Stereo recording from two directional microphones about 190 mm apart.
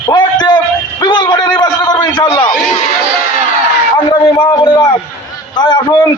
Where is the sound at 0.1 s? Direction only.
25° left (ahead or behind).